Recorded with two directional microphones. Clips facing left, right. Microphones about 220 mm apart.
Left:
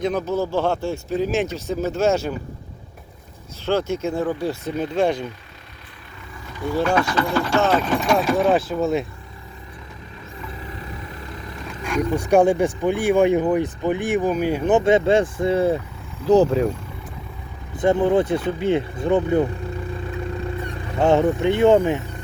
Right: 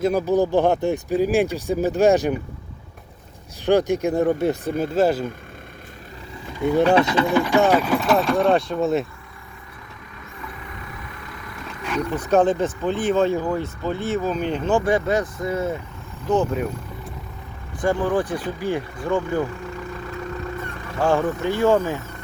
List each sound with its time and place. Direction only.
0.0 s speech: 10° right (ahead or behind)
3.7 s speech: 15° right (ahead or behind)
4.9 s speech: 5° right (ahead or behind)
6.6 s speech: 20° right (ahead or behind); by 9.0 s centre (ahead or behind)
10.5 s vehicle: 30° left (ahead or behind)
12.0 s speech: 15° left (ahead or behind)
14.7 s speech: 20° left (ahead or behind)
17.7 s speech: 20° left (ahead or behind)
20.6 s speech: 15° left (ahead or behind)